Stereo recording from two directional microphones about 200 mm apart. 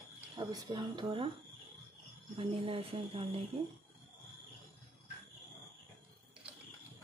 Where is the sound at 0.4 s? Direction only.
20° right (ahead or behind).